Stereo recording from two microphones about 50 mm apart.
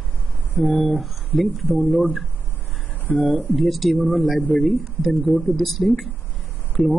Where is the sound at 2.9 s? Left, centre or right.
Left.